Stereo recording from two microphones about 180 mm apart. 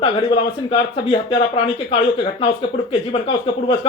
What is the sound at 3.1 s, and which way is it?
Speech, 30° left (ahead or behind).